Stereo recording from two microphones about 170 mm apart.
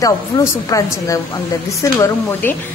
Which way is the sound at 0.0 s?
20° left (ahead or behind).